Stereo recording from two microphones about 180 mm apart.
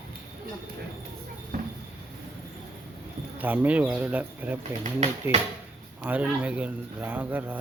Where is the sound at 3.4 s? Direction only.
10° right (ahead or behind).